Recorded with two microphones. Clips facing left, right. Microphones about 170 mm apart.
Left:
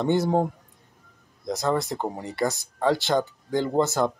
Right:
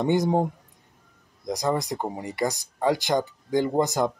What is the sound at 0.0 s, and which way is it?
Speech, 15° right (ahead or behind).